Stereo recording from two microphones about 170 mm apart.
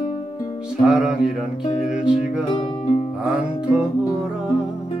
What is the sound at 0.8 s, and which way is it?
Music, 5° right (ahead or behind).